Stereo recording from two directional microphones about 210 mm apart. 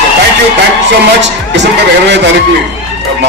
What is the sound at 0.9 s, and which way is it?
A man's voice, 55° right (ahead or behind).